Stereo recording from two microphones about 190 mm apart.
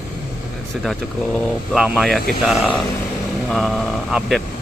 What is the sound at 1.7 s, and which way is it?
Speech, 5° right (ahead or behind).